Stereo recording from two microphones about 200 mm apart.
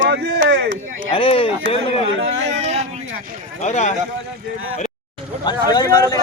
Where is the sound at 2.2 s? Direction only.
70° right (ahead or behind).